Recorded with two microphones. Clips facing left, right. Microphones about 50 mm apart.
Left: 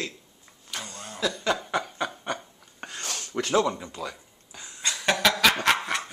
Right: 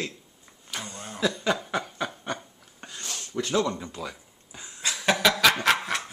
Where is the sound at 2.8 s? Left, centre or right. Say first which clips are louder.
Left 3 dB; left.